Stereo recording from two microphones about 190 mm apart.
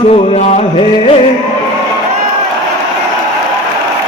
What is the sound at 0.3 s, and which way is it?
Speech, 35° left (ahead or behind).